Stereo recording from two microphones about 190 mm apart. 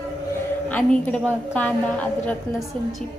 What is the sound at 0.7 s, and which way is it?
A woman's voice, 10° left (ahead or behind).